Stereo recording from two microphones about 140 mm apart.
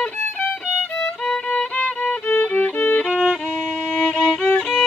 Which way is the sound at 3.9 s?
10° left (ahead or behind).